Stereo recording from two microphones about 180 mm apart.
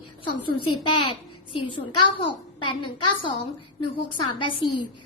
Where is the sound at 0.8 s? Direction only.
25° left (ahead or behind).